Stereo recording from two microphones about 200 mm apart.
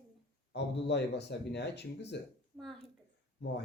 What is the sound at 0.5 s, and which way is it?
Speech, 60° left (ahead or behind).